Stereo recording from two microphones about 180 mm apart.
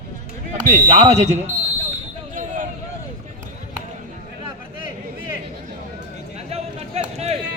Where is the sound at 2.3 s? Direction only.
45° right (ahead or behind).